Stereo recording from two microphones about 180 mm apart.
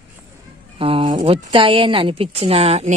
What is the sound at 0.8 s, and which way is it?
Speech, 30° right (ahead or behind).